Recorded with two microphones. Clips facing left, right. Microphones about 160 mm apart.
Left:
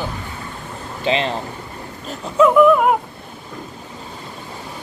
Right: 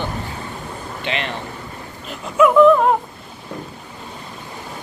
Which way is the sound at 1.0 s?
30° left (ahead or behind).